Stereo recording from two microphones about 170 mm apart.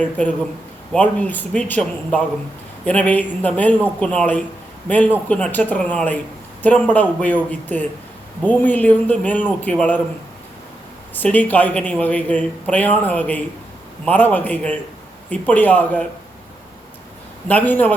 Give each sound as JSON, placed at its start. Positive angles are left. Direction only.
{"t": 0.0, "sound": "speech", "side_deg": 10}
{"t": 11.1, "sound": "speech", "side_deg": 10}
{"t": 17.5, "sound": "speech", "side_deg": 10}